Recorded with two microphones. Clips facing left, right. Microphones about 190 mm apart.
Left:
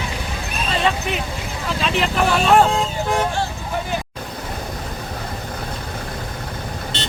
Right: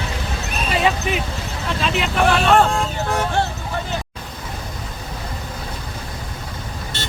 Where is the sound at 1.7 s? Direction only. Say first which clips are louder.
Left 1 dB; centre (ahead or behind).